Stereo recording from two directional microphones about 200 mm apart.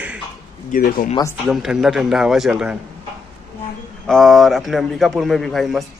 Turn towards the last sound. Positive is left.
turn(degrees=0)  # may be behind; listen again after turning